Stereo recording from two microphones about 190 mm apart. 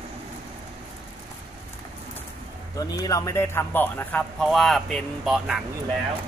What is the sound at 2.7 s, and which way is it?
A man's voice, 20° left (ahead or behind).